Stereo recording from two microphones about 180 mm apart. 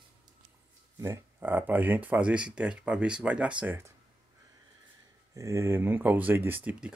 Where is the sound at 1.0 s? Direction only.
15° right (ahead or behind).